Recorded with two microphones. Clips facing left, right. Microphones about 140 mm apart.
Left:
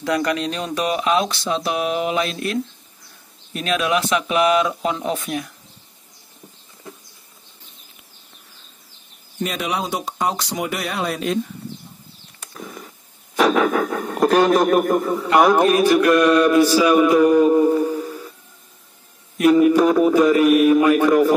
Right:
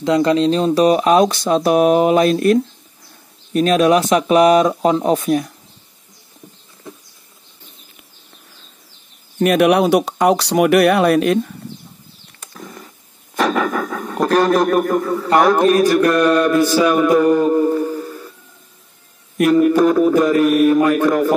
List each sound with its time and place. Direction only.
0.0 s speech: 25° right (ahead or behind)
9.4 s speech: 65° right (ahead or behind)
13.4 s a sound: 5° left (ahead or behind)
14.3 s speech: 10° left (ahead or behind)
16.3 s a sound: 5° left (ahead or behind)
19.4 s speech: 5° left (ahead or behind)